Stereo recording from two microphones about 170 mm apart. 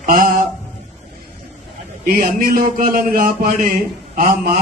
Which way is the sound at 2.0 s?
55° right (ahead or behind).